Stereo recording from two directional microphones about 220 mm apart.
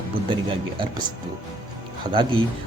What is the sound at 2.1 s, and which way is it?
Speech, 20° right (ahead or behind).